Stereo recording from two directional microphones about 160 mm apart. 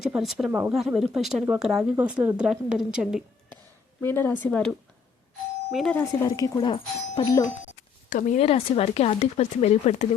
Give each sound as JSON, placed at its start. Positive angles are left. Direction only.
{"t": 0.0, "sound": "speech", "side_deg": 0}
{"t": 4.0, "sound": "speech", "side_deg": 15}
{"t": 5.7, "sound": "speech", "side_deg": 5}
{"t": 6.0, "sound": "speech", "side_deg": 25}
{"t": 8.1, "sound": "speech", "side_deg": 45}